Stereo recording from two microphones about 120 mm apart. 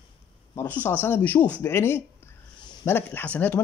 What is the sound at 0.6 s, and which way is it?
Speech, 15° left (ahead or behind).